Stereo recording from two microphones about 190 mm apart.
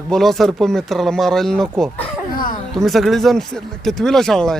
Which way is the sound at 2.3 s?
50° left (ahead or behind).